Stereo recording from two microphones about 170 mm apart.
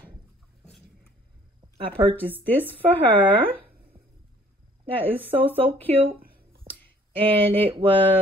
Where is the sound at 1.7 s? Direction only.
30° right (ahead or behind).